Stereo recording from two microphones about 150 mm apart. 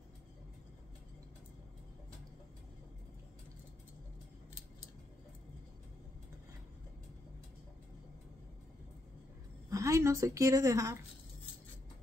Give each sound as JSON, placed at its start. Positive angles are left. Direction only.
{"t": 9.7, "sound": "a woman's voice", "side_deg": -20}